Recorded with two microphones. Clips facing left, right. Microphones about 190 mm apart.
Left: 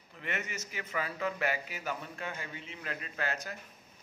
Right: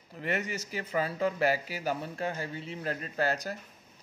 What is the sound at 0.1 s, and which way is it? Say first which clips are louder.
Speech: right 6 dB; 35° right (ahead or behind).